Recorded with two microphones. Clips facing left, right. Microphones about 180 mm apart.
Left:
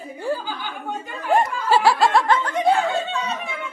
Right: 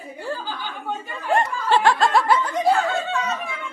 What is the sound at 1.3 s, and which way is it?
Snicker, 5° left (ahead or behind).